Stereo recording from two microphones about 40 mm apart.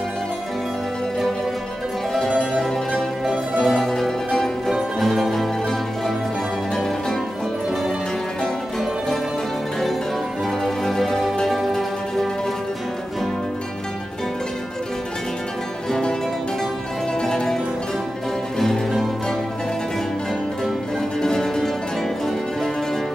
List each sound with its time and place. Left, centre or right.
3.6 s mandolin: centre
4.6 s music: centre
10.6 s music: centre
17.2 s music: centre
18.6 s music: centre
21.2 s music: centre